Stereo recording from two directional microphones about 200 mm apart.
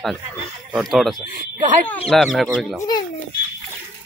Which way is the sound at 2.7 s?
20° left (ahead or behind).